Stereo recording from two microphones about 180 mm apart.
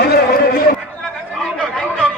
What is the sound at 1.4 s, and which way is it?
Chatter, 5° left (ahead or behind).